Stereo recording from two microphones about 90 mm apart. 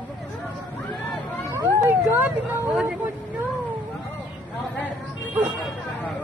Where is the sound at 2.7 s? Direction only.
15° right (ahead or behind).